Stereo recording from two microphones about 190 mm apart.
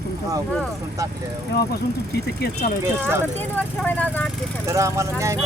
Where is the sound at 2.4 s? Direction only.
55° left (ahead or behind).